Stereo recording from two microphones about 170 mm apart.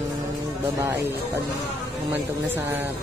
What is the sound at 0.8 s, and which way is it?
Speech, 15° right (ahead or behind).